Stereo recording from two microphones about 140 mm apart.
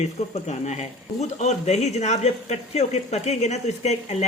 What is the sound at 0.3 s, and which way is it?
A woman's voice, 55° left (ahead or behind).